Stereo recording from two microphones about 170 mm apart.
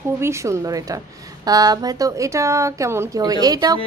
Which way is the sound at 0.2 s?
15° right (ahead or behind).